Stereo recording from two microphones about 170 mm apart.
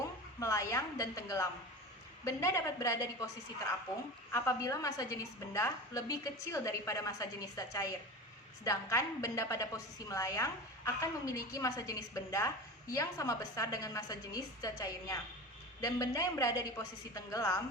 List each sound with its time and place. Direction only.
0.3 s a woman's voice: 20° left (ahead or behind)
4.3 s a woman's voice: 15° left (ahead or behind)